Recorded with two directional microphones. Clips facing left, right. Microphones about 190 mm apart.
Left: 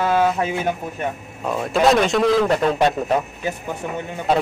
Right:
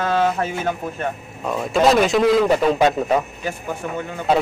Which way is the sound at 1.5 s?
Centre (ahead or behind).